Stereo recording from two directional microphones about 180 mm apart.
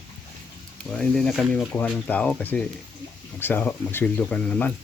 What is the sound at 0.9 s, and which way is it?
Speech, 5° left (ahead or behind).